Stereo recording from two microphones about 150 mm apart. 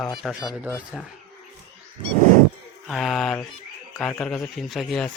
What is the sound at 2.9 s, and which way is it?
A man's voice, centre (ahead or behind).